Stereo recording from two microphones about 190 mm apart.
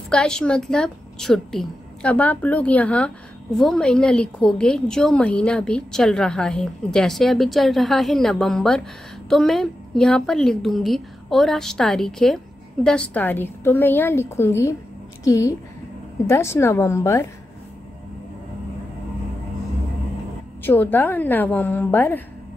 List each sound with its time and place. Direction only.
0.1 s a woman's voice: 5° left (ahead or behind)
20.6 s a woman's voice: 10° left (ahead or behind)